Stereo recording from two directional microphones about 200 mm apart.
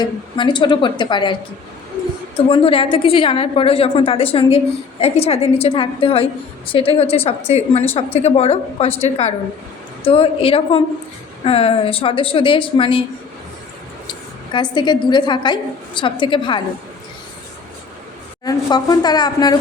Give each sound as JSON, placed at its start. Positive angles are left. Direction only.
{"t": 0.0, "sound": "a woman's voice", "side_deg": 25}
{"t": 14.5, "sound": "a woman's voice", "side_deg": 20}
{"t": 18.4, "sound": "a woman's voice", "side_deg": 20}